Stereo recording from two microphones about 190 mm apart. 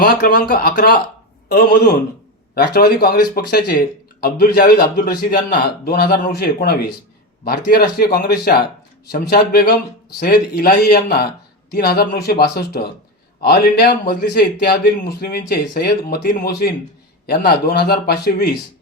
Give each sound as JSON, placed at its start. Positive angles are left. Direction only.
{"t": 0.0, "sound": "speech", "side_deg": 50}
{"t": 2.6, "sound": "speech", "side_deg": 55}